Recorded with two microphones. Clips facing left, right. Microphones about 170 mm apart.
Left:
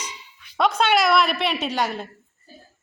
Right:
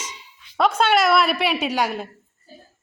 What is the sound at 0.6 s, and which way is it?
A woman's voice, 5° right (ahead or behind).